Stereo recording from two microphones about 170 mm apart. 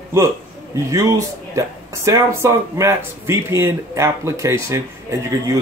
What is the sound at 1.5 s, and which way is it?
Speech, 20° right (ahead or behind).